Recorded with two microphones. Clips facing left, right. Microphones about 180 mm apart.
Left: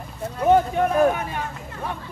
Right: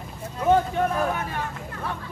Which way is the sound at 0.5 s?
15° left (ahead or behind).